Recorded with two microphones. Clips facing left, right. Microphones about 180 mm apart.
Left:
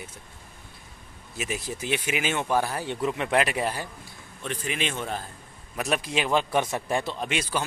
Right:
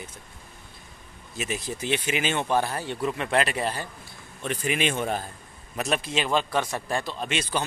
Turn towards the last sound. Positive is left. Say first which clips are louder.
# even
turn(degrees=15)  # may be behind; listen again after turning